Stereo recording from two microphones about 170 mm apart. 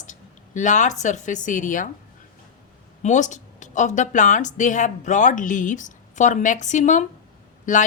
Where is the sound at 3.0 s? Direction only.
45° left (ahead or behind).